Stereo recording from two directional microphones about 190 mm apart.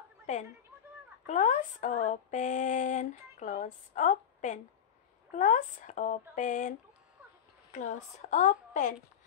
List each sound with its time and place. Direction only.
0.3 s speech: 40° left (ahead or behind)
7.7 s speech: 40° left (ahead or behind)